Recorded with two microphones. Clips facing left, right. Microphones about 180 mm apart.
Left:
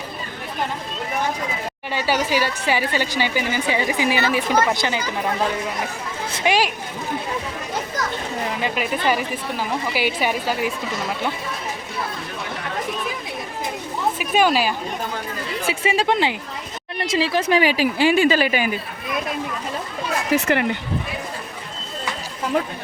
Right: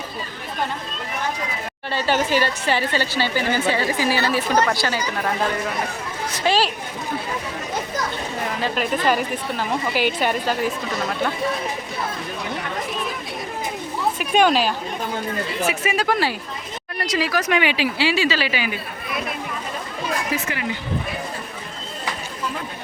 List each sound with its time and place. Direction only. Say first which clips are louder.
1.9 s a woman's voice: right 1 dB; 10° left (ahead or behind)
8.6 s a woman's voice: right 2 dB; 5° left (ahead or behind)
14.2 s a woman's voice: right 1 dB; 5° left (ahead or behind)
15.6 s speech: left 2 dB; 30° left (ahead or behind); by 18.8 s 45° left (ahead or behind)
20.3 s a woman's voice: left 7 dB; 65° left (ahead or behind)